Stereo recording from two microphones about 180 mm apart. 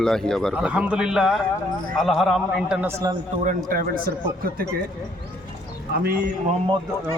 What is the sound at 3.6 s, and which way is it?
Speech, 55° right (ahead or behind).